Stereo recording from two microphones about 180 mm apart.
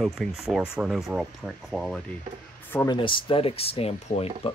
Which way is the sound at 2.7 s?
20° left (ahead or behind).